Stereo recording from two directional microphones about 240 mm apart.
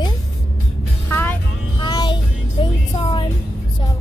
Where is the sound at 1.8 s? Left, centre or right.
Centre.